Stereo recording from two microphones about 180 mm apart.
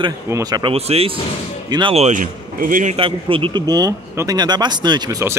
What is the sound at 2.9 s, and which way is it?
Speech, 30° right (ahead or behind).